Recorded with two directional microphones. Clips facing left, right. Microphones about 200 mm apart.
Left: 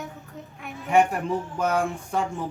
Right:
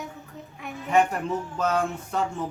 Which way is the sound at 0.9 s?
10° left (ahead or behind).